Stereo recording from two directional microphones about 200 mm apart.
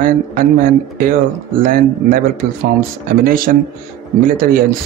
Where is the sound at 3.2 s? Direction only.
45° right (ahead or behind).